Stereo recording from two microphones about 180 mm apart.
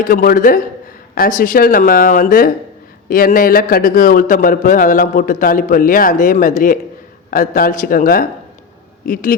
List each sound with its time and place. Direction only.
0.0 s a man's voice: 50° left (ahead or behind)